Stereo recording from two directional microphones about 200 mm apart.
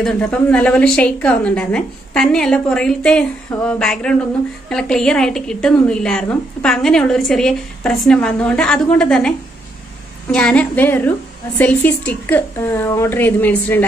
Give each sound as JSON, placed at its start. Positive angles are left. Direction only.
{"t": 0.0, "sound": "a woman's voice", "side_deg": 5}
{"t": 10.3, "sound": "a woman's voice", "side_deg": 5}